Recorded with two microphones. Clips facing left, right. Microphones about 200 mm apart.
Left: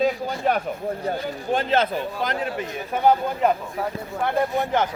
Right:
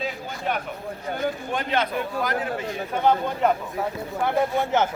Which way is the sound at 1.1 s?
40° left (ahead or behind).